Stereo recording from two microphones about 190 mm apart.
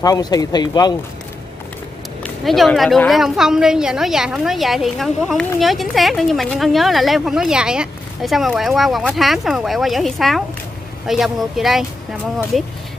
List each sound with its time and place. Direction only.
0.0 s speech: 20° left (ahead or behind)
2.2 s speech: centre (ahead or behind)